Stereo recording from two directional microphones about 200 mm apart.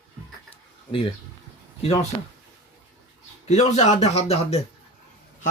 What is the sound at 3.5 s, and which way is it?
Speech, 35° left (ahead or behind).